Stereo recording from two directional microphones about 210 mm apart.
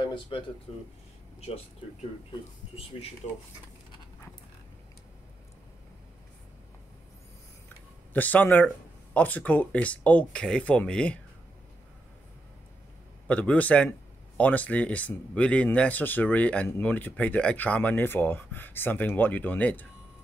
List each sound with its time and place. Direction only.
0.0 s speech: 25° left (ahead or behind)
1.4 s speech: 30° left (ahead or behind)
8.1 s speech: 10° left (ahead or behind)
13.3 s speech: 5° left (ahead or behind)